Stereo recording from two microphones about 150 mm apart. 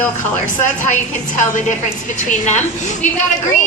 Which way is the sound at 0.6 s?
55° left (ahead or behind).